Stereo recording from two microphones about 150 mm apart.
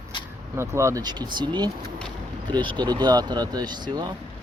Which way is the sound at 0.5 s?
20° right (ahead or behind).